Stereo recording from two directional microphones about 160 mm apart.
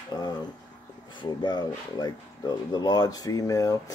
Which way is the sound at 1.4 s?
25° left (ahead or behind).